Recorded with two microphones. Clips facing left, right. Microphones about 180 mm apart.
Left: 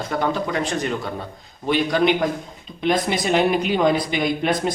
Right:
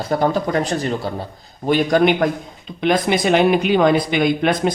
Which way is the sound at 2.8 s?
70° right (ahead or behind).